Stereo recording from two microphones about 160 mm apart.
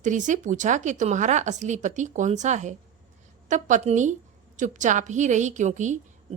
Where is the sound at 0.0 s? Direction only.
50° right (ahead or behind).